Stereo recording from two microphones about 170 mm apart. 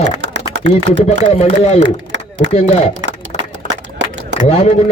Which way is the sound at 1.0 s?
40° left (ahead or behind).